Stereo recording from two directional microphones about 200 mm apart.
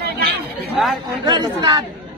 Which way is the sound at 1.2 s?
20° right (ahead or behind).